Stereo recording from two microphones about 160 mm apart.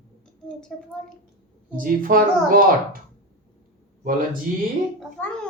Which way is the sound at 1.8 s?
60° right (ahead or behind).